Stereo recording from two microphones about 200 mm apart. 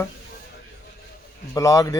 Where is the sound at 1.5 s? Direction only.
15° left (ahead or behind).